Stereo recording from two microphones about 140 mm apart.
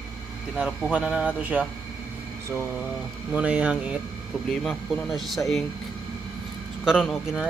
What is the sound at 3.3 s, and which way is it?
Speech, 10° right (ahead or behind).